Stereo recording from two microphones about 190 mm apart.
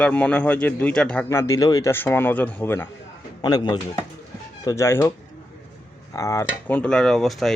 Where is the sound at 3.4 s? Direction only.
20° left (ahead or behind).